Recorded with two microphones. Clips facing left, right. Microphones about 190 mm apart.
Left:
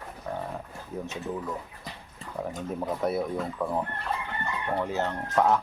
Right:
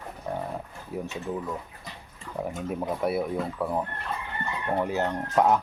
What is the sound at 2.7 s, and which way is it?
Speech, 5° right (ahead or behind).